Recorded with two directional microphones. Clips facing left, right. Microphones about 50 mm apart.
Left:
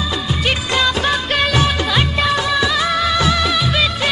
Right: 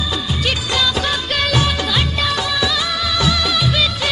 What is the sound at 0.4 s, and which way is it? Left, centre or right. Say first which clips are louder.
Music of bollywood: left 2 dB; left.